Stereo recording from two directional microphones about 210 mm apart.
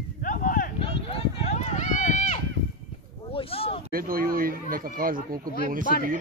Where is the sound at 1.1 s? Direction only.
30° left (ahead or behind).